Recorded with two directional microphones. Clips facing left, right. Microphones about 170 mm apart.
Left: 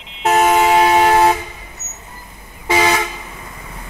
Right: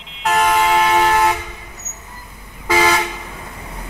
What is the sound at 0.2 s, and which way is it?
Vehicle, 40° left (ahead or behind).